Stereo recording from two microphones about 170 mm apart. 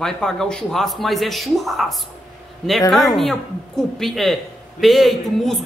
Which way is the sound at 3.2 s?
Centre (ahead or behind).